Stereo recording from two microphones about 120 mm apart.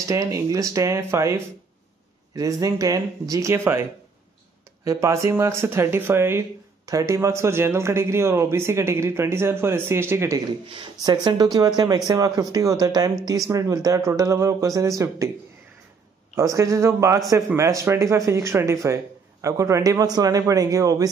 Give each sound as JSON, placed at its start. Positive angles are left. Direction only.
{"t": 0.1, "sound": "speech", "side_deg": -30}
{"t": 2.6, "sound": "speech", "side_deg": -30}
{"t": 4.8, "sound": "speech", "side_deg": -25}
{"t": 11.0, "sound": "speech", "side_deg": -35}
{"t": 16.3, "sound": "speech", "side_deg": -25}